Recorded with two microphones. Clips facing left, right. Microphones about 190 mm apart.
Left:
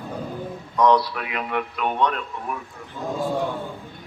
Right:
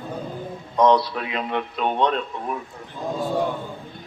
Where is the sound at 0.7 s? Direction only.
25° right (ahead or behind).